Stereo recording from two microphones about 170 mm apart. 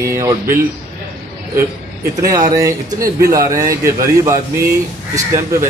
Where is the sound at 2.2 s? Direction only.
20° right (ahead or behind).